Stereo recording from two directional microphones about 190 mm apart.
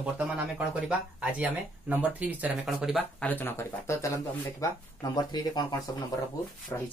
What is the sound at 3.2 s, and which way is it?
Speech, 10° left (ahead or behind).